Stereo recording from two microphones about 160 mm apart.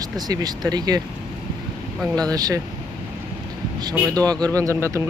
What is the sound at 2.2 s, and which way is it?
Speech, 25° right (ahead or behind).